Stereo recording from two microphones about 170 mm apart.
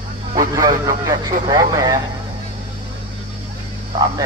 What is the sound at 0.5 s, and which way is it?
Speech, 20° right (ahead or behind).